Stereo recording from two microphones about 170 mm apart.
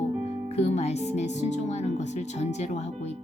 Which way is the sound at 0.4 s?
40° left (ahead or behind).